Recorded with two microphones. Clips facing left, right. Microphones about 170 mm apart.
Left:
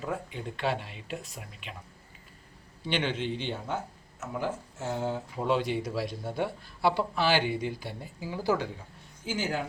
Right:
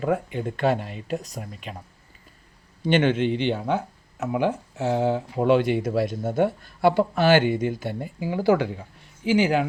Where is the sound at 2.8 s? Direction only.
50° right (ahead or behind).